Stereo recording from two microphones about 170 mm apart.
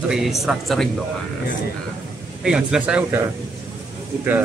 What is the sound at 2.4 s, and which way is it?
Speech, 5° right (ahead or behind).